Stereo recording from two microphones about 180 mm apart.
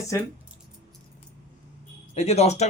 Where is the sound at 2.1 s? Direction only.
35° left (ahead or behind).